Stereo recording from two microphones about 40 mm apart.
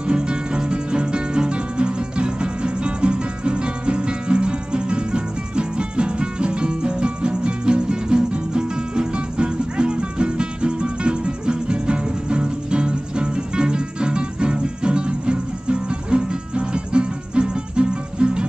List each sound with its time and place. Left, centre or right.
0.0 s music: right